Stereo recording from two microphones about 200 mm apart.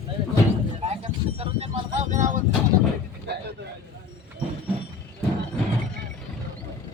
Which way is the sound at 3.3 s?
55° right (ahead or behind).